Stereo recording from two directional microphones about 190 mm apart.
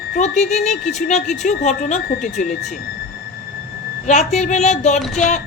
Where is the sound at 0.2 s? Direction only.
35° left (ahead or behind).